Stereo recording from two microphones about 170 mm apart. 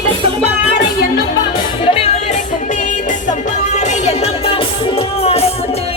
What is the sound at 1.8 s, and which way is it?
Music, 35° left (ahead or behind).